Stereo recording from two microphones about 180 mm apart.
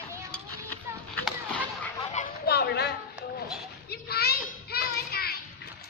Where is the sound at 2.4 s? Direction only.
65° left (ahead or behind).